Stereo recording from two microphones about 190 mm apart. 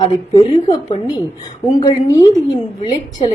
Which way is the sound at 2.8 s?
35° left (ahead or behind).